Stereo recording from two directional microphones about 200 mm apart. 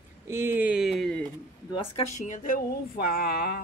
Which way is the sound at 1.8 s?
35° left (ahead or behind).